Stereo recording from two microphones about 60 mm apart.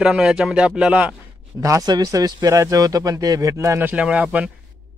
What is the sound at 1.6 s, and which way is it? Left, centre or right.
Speech, right.